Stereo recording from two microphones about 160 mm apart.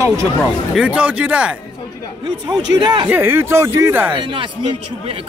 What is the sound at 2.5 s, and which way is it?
Speech, 25° right (ahead or behind).